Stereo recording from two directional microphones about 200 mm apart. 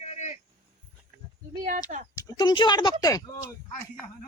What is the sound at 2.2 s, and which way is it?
Speech, 20° left (ahead or behind).